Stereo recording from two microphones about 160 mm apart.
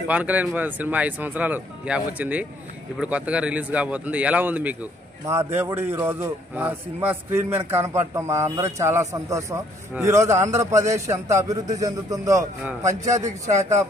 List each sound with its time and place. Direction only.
0.1 s a man's voice: 10° right (ahead or behind)